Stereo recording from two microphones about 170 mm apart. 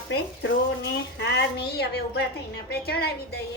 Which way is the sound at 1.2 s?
85° left.